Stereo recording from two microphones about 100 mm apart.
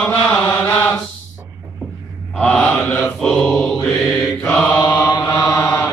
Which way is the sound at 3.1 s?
Centre (ahead or behind).